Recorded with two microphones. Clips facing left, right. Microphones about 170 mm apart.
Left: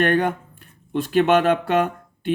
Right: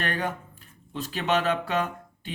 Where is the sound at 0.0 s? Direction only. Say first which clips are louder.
Left 10 dB; 55° left (ahead or behind).